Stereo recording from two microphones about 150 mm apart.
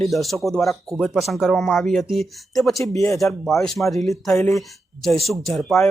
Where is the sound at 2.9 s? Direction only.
20° left (ahead or behind).